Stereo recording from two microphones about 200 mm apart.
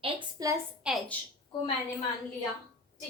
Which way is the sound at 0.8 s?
Centre (ahead or behind).